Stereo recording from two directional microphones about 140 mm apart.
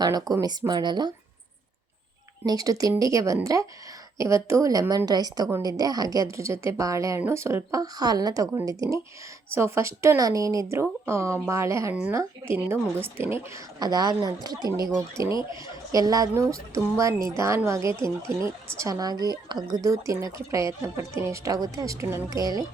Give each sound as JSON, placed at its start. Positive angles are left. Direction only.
{"t": 0.3, "sound": "speech", "side_deg": 0}
{"t": 0.7, "sound": "speech", "side_deg": -30}
{"t": 2.5, "sound": "speech", "side_deg": -25}
{"t": 13.7, "sound": "speech", "side_deg": -25}
{"t": 14.8, "sound": "speech", "side_deg": 5}
{"t": 15.3, "sound": "speech", "side_deg": 35}
{"t": 15.9, "sound": "speech", "side_deg": -25}